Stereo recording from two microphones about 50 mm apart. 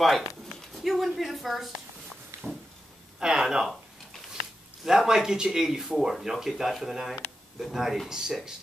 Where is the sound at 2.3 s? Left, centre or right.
Right.